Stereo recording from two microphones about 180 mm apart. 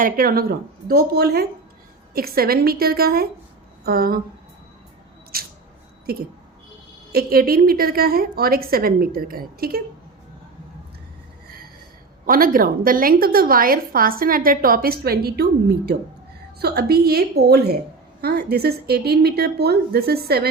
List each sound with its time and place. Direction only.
0.0 s a woman's voice: 55° right (ahead or behind)
5.3 s a sound: 55° right (ahead or behind)
7.1 s a woman's voice: 55° right (ahead or behind)
12.2 s a woman's voice: 50° right (ahead or behind)
16.6 s a woman's voice: 60° right (ahead or behind)